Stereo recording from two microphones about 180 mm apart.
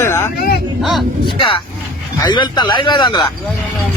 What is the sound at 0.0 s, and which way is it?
Vehicle, 15° left (ahead or behind).